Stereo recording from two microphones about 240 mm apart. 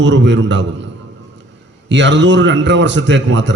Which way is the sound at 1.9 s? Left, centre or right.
Right.